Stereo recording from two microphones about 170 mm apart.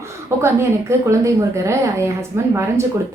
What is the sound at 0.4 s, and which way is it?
A woman's voice, 15° right (ahead or behind).